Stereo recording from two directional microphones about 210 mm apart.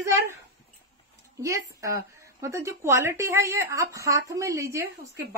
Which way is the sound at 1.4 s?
15° right (ahead or behind).